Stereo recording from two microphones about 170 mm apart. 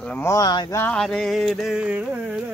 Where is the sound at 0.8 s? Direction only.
5° left (ahead or behind).